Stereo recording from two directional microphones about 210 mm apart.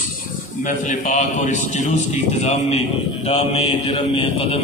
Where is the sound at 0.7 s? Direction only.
35° left (ahead or behind).